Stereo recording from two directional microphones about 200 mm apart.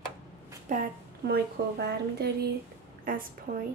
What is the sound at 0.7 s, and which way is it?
Speech, 40° right (ahead or behind).